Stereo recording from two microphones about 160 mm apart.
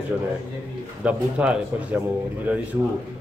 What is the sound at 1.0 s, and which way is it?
Speech, 5° right (ahead or behind).